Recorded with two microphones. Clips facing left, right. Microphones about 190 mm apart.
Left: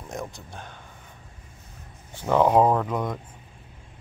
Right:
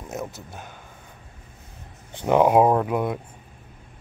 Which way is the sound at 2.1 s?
15° right (ahead or behind).